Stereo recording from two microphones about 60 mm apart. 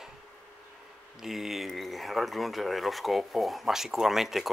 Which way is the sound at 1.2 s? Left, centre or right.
Centre.